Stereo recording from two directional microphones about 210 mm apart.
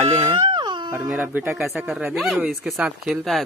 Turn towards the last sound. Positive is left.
turn(degrees=0)  # may be behind; listen again after turning